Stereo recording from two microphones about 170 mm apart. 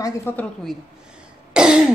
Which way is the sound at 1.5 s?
5° right (ahead or behind).